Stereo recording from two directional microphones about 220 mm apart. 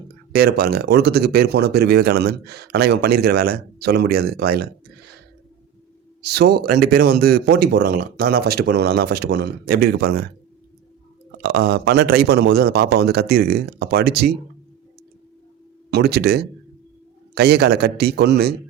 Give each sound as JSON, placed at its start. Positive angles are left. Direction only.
{"t": 0.3, "sound": "speech", "side_deg": -45}
{"t": 6.2, "sound": "speech", "side_deg": -45}
{"t": 11.4, "sound": "speech", "side_deg": -45}
{"t": 15.9, "sound": "speech", "side_deg": -50}